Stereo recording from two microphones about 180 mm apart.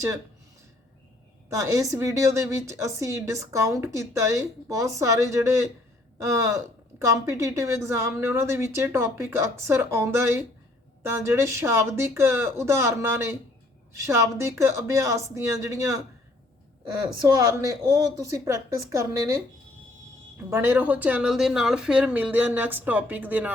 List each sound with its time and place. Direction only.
1.5 s a woman's voice: 15° right (ahead or behind)
17.2 s a woman's voice: 20° right (ahead or behind)
20.5 s a woman's voice: 10° right (ahead or behind)